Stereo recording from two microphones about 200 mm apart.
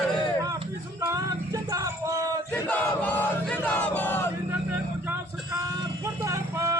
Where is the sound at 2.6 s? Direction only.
10° left (ahead or behind).